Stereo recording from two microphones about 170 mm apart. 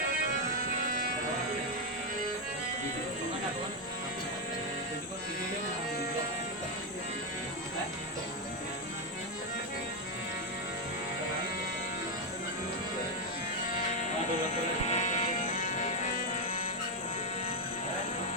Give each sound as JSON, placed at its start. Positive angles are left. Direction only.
{"t": 13.7, "sound": "music", "side_deg": 45}